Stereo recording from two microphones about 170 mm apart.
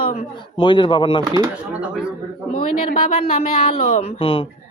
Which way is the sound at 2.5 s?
50° left (ahead or behind).